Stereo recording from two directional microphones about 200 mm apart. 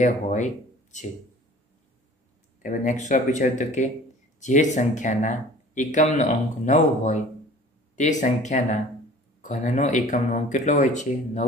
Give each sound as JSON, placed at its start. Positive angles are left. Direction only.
{"t": 0.0, "sound": "speech", "side_deg": 35}
{"t": 2.6, "sound": "speech", "side_deg": 40}